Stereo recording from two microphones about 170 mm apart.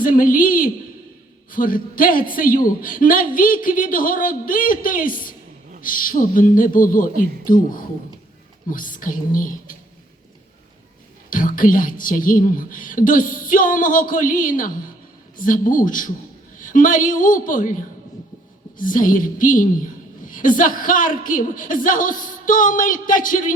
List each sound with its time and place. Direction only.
0.0 s a man's voice: 55° left (ahead or behind)
11.3 s a woman's voice: 55° left (ahead or behind)
18.8 s a woman's voice: 50° left (ahead or behind)